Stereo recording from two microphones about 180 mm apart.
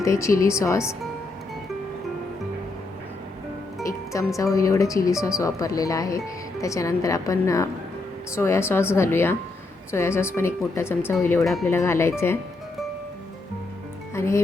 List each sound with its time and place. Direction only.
0.0 s speech: 15° left (ahead or behind)
3.8 s music: 15° left (ahead or behind)
4.4 s speech: 15° left (ahead or behind)
14.1 s speech: 15° left (ahead or behind)